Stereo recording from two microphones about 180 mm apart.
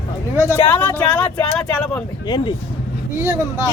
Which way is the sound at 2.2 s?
25° left (ahead or behind).